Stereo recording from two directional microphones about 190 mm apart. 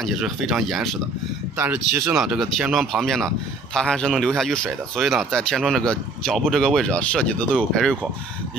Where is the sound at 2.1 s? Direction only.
Centre (ahead or behind).